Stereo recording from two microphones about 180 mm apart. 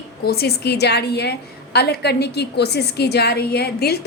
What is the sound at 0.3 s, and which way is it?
A woman's voice, 60° left (ahead or behind).